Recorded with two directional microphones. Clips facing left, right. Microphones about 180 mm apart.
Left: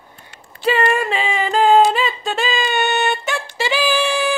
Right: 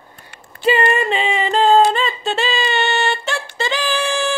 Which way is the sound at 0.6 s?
Centre (ahead or behind).